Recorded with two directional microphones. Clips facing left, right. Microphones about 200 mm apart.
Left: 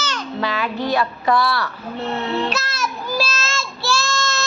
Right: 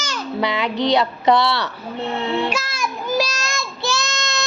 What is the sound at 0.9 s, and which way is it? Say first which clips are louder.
Music: right 2 dB; 20° right (ahead or behind).